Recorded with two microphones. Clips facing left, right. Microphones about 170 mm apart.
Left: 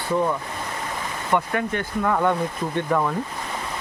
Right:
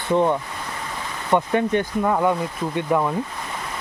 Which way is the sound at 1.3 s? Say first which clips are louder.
Right 4 dB; 20° right (ahead or behind).